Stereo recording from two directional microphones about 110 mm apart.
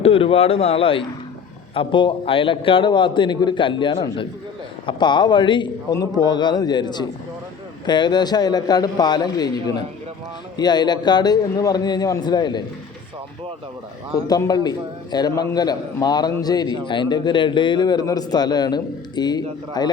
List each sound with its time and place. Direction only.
0.0 s a man's voice: 60° left (ahead or behind)
5.9 s a man's voice: 35° left (ahead or behind)
14.3 s a man's voice: 35° left (ahead or behind)